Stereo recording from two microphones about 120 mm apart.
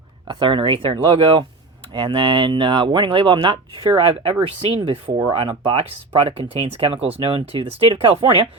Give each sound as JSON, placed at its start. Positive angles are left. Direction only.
{"t": 0.3, "sound": "speech", "side_deg": -40}